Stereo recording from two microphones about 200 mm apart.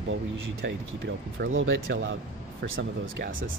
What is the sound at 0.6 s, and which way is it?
Speech, 60° right (ahead or behind).